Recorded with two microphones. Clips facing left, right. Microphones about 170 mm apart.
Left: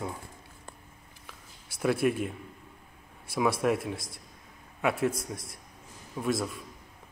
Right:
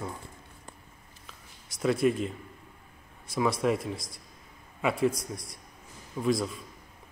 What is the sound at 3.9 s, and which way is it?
Speech, 25° left (ahead or behind).